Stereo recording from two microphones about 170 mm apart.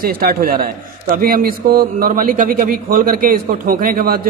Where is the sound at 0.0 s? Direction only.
60° right (ahead or behind).